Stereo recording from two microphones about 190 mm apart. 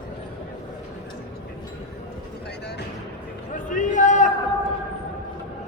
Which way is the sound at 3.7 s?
40° left (ahead or behind).